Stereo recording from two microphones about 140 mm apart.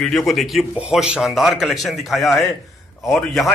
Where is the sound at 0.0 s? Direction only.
Centre (ahead or behind).